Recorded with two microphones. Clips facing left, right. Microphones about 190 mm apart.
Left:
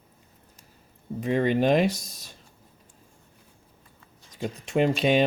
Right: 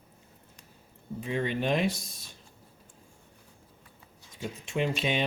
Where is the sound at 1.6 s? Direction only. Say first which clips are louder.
Left 6 dB; 40° left (ahead or behind).